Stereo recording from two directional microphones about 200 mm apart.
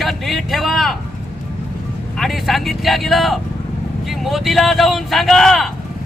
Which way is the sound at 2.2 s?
Centre (ahead or behind).